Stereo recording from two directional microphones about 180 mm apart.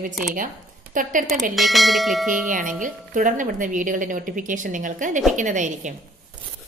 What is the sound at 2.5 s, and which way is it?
A woman's voice, 45° right (ahead or behind).